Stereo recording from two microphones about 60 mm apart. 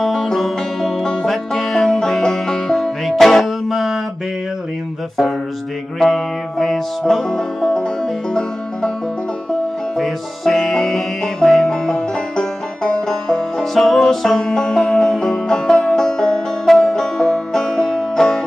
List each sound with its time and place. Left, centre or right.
0.0 s music: centre
5.9 s music: centre
11.4 s banjo: centre